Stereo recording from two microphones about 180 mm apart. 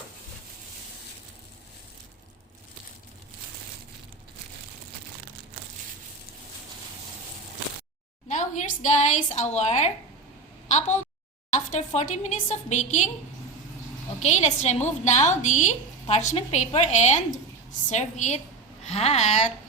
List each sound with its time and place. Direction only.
8.3 s a woman's voice: 45° left (ahead or behind)
10.7 s a sound: 40° left (ahead or behind)
11.5 s a woman's voice: 40° left (ahead or behind)
14.3 s a woman's voice: 40° left (ahead or behind)